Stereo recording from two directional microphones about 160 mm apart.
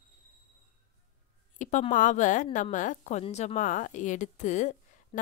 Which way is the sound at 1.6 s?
50° left (ahead or behind).